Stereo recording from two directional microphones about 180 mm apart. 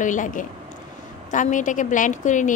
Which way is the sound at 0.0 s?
45° left (ahead or behind).